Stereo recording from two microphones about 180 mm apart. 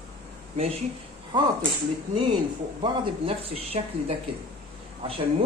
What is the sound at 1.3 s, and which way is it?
Speech, 25° right (ahead or behind).